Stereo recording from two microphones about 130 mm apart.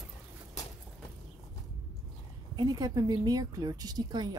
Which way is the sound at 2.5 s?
30° right (ahead or behind).